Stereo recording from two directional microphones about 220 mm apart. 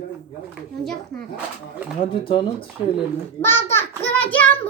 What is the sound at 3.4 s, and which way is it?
A child's voice, 10° left (ahead or behind).